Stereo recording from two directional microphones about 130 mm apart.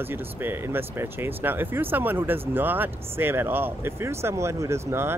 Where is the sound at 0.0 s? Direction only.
15° right (ahead or behind).